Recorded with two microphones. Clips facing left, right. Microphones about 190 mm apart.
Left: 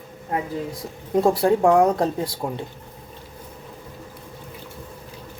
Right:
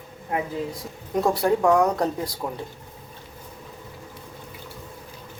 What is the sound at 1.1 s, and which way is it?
Speech, 30° left (ahead or behind).